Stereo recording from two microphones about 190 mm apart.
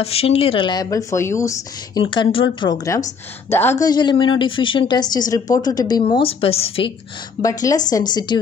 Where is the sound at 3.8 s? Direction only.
20° left (ahead or behind).